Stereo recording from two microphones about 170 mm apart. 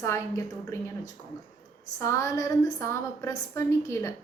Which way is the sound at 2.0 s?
15° left (ahead or behind).